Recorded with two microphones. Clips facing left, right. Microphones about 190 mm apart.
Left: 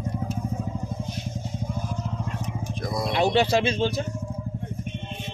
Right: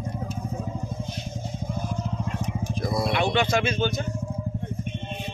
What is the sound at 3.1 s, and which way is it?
Speech, 35° left (ahead or behind).